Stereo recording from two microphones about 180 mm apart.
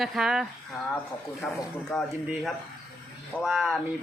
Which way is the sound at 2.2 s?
5° right (ahead or behind).